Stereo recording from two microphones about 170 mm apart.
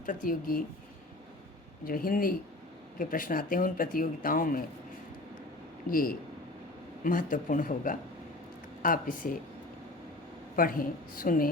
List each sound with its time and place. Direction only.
0.0 s speech: 55° left (ahead or behind)
1.8 s speech: 60° left (ahead or behind)
5.9 s speech: 55° left (ahead or behind)
10.5 s speech: 55° left (ahead or behind)